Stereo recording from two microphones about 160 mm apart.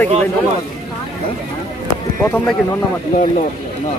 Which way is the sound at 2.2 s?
10° left (ahead or behind).